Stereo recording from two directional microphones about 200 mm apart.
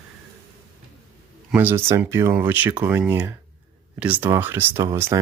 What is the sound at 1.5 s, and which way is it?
Speech, 10° right (ahead or behind).